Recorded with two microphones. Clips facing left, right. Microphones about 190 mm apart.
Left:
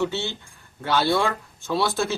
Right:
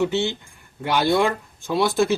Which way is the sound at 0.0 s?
15° right (ahead or behind).